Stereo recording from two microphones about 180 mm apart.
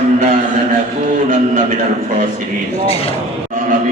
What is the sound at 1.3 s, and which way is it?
Speech, 45° right (ahead or behind).